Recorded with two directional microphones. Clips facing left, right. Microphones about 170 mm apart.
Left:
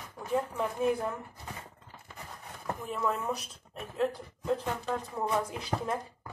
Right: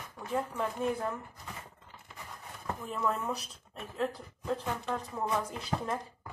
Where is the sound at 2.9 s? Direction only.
5° left (ahead or behind).